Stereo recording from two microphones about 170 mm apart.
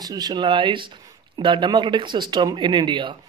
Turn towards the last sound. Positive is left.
turn(degrees=-30)  # may be behind; listen again after turning